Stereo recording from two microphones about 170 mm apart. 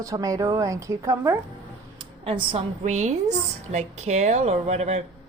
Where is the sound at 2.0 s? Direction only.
30° right (ahead or behind).